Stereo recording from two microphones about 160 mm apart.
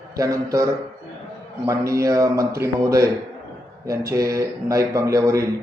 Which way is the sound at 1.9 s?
20° right (ahead or behind).